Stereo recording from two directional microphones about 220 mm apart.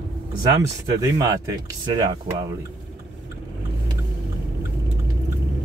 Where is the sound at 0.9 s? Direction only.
15° right (ahead or behind).